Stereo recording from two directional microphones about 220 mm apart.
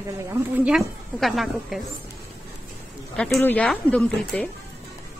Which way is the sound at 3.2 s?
5° left (ahead or behind).